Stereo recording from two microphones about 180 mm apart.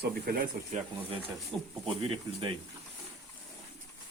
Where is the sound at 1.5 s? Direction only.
Centre (ahead or behind).